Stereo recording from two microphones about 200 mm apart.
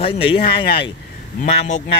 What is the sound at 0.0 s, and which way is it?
Speech, 25° left (ahead or behind).